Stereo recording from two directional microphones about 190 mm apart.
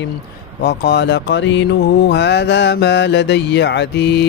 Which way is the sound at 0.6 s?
60° left (ahead or behind).